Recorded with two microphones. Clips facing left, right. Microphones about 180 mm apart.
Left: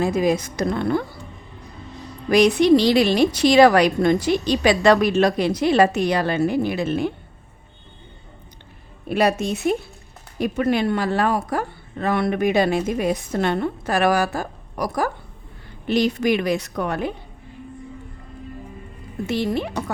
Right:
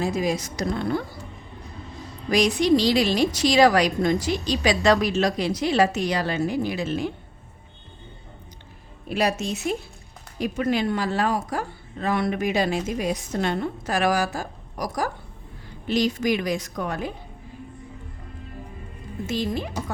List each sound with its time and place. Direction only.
0.0 s a woman's voice: 55° left (ahead or behind)
2.3 s a woman's voice: 60° left (ahead or behind)
9.0 s a woman's voice: 55° left (ahead or behind)
19.3 s a woman's voice: 65° left (ahead or behind)